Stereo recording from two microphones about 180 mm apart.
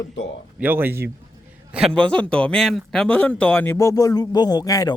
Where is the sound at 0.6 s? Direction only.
10° right (ahead or behind); by 4.9 s 20° left (ahead or behind).